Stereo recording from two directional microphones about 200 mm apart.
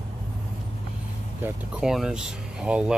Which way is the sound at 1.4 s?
5° right (ahead or behind).